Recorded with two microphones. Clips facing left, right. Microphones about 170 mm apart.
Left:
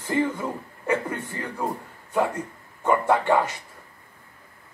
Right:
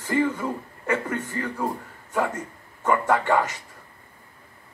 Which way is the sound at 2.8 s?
10° left (ahead or behind).